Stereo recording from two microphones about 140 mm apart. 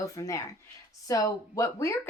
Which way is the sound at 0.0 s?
25° left (ahead or behind).